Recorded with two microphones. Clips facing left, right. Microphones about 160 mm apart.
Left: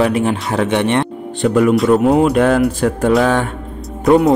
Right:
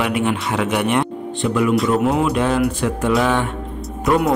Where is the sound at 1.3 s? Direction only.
45° left (ahead or behind).